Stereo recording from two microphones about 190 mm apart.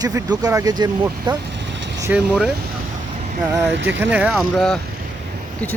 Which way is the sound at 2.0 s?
10° right (ahead or behind).